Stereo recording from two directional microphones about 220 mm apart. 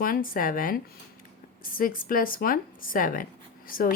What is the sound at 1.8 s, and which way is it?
Speech, 40° left (ahead or behind).